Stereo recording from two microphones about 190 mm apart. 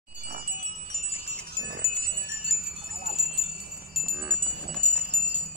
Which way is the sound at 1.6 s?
70° right (ahead or behind).